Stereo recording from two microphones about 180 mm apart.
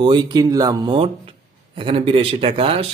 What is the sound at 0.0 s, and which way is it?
A man's voice, 25° right (ahead or behind).